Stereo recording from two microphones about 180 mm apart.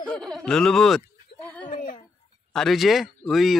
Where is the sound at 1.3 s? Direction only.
40° left (ahead or behind).